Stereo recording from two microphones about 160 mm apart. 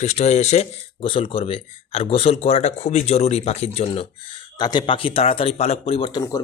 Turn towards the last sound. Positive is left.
turn(degrees=25)  # may be behind; listen again after turning